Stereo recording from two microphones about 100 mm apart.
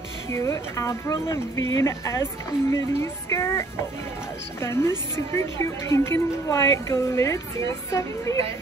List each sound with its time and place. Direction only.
0.3 s a woman's voice: 30° left (ahead or behind)